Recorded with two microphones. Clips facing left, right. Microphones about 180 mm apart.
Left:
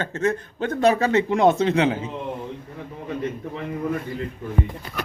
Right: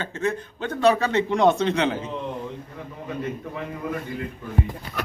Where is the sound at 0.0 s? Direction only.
40° left (ahead or behind).